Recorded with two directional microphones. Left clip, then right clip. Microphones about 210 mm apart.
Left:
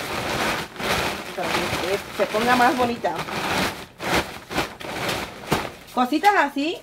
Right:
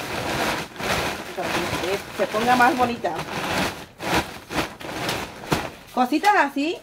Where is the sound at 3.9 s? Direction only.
15° left (ahead or behind).